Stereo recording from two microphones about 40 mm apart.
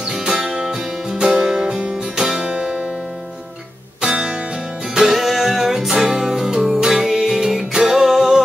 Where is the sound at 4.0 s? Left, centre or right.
Right.